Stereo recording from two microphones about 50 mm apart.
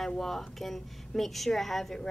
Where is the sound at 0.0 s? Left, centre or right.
Centre.